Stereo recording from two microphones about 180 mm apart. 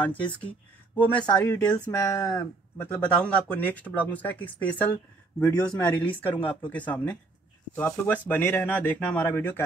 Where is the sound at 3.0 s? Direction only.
5° left (ahead or behind).